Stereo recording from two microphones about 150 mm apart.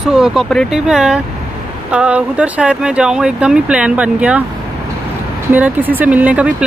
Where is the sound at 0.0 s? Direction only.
5° right (ahead or behind).